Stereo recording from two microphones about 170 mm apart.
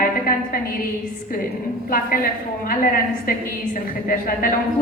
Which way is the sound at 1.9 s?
55° left (ahead or behind).